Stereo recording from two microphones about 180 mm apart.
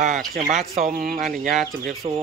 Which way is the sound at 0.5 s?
45° right (ahead or behind).